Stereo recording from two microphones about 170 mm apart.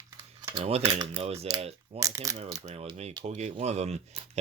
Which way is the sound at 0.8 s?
25° right (ahead or behind).